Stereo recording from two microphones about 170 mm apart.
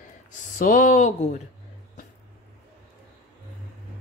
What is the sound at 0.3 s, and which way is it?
A woman's voice, 50° left (ahead or behind).